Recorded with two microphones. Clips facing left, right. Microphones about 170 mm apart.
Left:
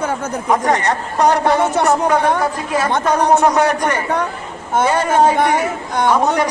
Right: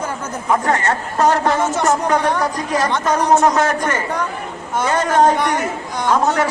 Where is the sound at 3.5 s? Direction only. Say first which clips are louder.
Left 2 dB; 10° left (ahead or behind).